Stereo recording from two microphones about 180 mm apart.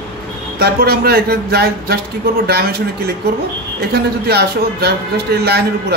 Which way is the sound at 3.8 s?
65° right (ahead or behind).